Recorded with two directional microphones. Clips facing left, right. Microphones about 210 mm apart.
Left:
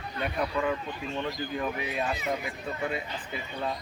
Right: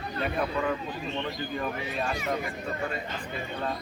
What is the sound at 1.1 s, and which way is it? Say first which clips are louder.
Speech: left 2 dB; 5° left (ahead or behind).